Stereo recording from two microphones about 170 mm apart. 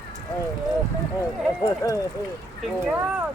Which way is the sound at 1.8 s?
20° left (ahead or behind).